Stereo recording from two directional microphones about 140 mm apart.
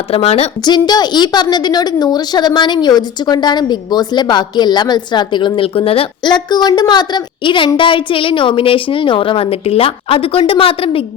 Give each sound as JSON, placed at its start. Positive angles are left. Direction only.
{"t": 0.1, "sound": "a woman's voice", "side_deg": 45}
{"t": 0.6, "sound": "a woman's voice", "side_deg": 30}